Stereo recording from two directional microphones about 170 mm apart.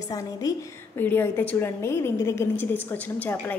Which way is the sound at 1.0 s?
10° left (ahead or behind).